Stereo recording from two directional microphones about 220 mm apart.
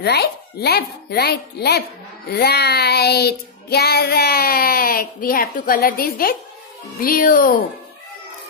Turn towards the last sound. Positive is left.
turn(degrees=40)  # may be behind; listen again after turning